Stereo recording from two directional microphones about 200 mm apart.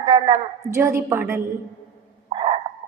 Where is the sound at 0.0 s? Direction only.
25° right (ahead or behind).